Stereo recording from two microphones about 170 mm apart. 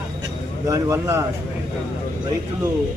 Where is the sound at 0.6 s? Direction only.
15° right (ahead or behind).